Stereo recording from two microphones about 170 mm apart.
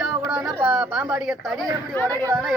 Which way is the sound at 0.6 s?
5° right (ahead or behind).